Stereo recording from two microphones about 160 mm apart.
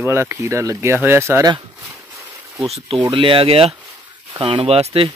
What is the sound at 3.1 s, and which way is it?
Speech, 35° right (ahead or behind).